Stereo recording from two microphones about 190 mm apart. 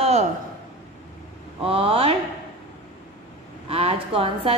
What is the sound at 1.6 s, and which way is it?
Speech, 30° right (ahead or behind).